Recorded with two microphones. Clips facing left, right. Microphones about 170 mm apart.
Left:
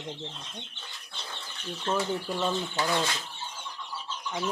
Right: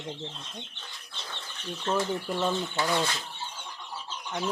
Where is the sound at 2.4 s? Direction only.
5° right (ahead or behind).